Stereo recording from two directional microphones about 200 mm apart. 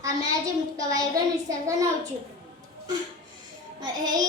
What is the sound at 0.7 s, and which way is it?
Speech, 20° right (ahead or behind).